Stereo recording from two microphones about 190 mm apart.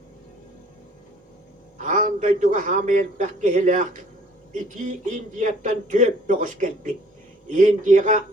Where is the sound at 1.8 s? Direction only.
40° right (ahead or behind).